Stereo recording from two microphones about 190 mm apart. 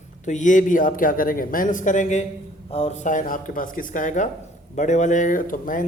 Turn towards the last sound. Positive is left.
turn(degrees=45)  # may be behind; listen again after turning